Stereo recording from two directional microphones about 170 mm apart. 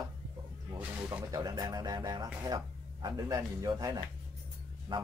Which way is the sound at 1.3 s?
20° right (ahead or behind).